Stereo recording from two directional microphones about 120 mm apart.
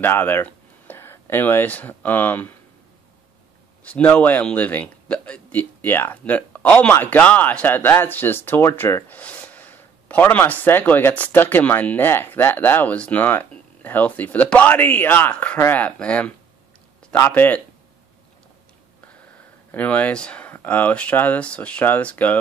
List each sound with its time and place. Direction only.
0.0 s speech: 15° left (ahead or behind)
3.8 s speech: 10° left (ahead or behind)
19.7 s speech: 10° left (ahead or behind)